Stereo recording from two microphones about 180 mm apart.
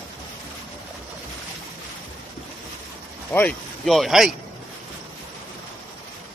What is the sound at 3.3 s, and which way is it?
Speech, 5° left (ahead or behind).